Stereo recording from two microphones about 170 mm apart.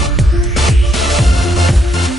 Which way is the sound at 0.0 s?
Centre (ahead or behind).